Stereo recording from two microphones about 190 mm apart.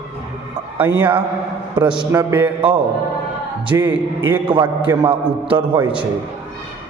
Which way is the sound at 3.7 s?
10° right (ahead or behind).